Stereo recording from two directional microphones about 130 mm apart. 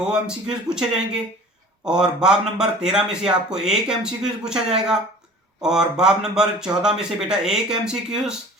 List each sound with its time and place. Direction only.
0.0 s speech: 5° right (ahead or behind)